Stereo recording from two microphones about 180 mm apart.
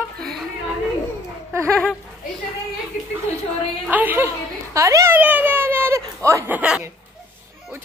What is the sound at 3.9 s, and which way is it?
A child's voice, 10° right (ahead or behind).